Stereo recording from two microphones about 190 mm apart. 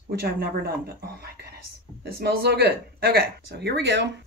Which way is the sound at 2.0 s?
55° right (ahead or behind).